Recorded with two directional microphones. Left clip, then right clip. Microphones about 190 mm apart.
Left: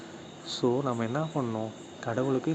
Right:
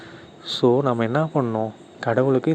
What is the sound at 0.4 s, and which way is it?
Speech, 40° right (ahead or behind).